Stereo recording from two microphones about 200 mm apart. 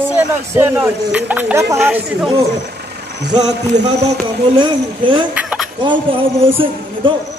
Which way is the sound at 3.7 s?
60° right (ahead or behind).